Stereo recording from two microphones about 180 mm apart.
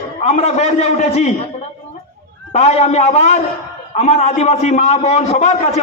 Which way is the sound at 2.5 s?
35° left (ahead or behind).